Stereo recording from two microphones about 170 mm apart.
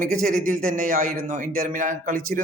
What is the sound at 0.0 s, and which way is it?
Speech, 50° right (ahead or behind).